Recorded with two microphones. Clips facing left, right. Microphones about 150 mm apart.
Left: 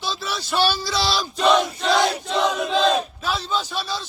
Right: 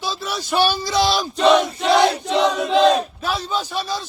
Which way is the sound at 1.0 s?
50° right (ahead or behind).